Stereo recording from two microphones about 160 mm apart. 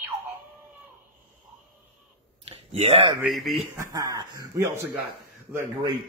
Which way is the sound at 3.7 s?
20° right (ahead or behind).